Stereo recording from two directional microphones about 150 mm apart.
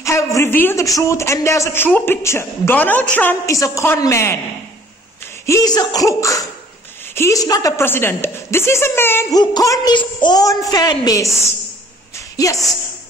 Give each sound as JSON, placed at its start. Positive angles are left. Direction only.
{"t": 0.0, "sound": "a man's voice", "side_deg": 20}
{"t": 5.5, "sound": "a man's voice", "side_deg": 25}
{"t": 9.4, "sound": "a man's voice", "side_deg": 25}